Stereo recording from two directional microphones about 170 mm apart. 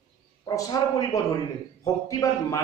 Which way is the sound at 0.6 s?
20° left (ahead or behind).